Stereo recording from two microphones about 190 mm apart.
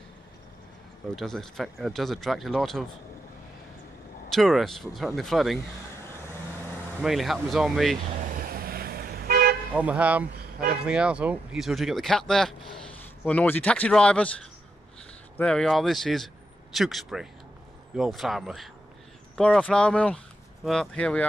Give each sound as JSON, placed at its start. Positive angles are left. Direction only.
{"t": 1.1, "sound": "speech", "side_deg": 5}
{"t": 4.3, "sound": "speech", "side_deg": 0}
{"t": 7.0, "sound": "speech", "side_deg": 0}
{"t": 8.5, "sound": "toot", "side_deg": -50}
{"t": 9.8, "sound": "speech", "side_deg": -5}
{"t": 15.3, "sound": "speech", "side_deg": 5}